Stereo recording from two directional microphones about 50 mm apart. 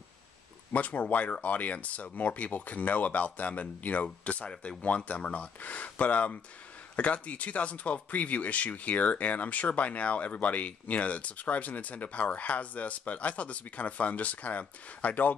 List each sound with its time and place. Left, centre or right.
0.7 s speech: left